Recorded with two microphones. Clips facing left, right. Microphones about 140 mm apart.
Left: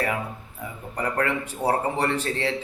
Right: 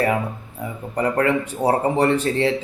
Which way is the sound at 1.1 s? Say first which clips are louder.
Right 5 dB; 20° right (ahead or behind).